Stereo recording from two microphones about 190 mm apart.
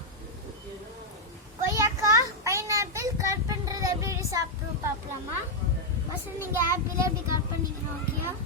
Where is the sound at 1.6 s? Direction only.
15° right (ahead or behind).